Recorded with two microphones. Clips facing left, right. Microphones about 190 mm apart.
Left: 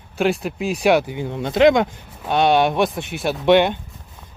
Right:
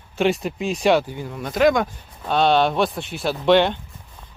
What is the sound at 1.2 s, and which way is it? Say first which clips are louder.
Speech: left 6 dB; 25° left (ahead or behind).